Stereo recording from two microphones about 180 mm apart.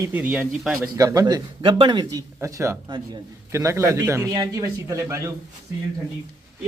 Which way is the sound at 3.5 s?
15° right (ahead or behind).